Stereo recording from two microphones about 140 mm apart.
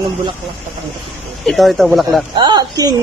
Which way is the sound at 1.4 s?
Centre (ahead or behind).